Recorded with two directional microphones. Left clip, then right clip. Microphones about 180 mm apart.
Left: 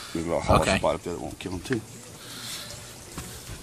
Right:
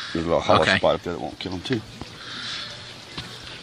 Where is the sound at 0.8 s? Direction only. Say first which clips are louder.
Right 5 dB; 25° right (ahead or behind).